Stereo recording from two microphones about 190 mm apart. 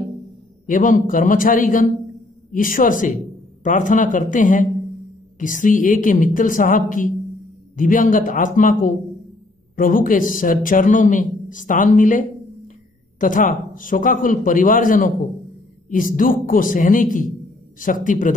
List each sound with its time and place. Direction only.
0.7 s a man's voice: 45° left (ahead or behind)